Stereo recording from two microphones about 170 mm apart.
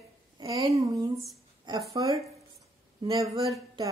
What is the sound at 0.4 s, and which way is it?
A woman's voice, 20° right (ahead or behind).